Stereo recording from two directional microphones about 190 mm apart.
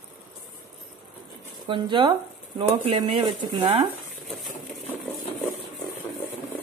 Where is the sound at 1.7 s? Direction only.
25° right (ahead or behind).